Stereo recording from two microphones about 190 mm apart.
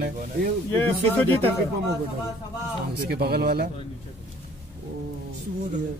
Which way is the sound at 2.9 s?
55° right (ahead or behind).